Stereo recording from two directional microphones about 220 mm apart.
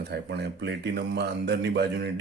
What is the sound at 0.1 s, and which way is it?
Speech, 50° right (ahead or behind).